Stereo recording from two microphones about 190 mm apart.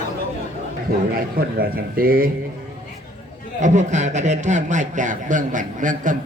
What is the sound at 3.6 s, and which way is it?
A man's voice, 40° right (ahead or behind).